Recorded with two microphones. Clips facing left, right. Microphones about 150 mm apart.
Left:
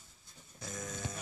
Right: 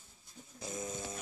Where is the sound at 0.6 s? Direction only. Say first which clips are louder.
Right 3 dB; 25° right (ahead or behind).